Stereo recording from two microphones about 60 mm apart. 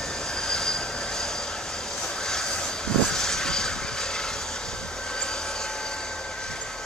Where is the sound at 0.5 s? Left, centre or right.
Centre.